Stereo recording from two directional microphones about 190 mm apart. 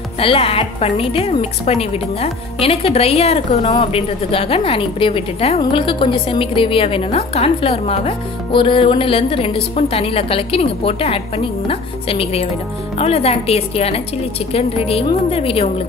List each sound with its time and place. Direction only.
0.2 s a woman's voice: 30° left (ahead or behind)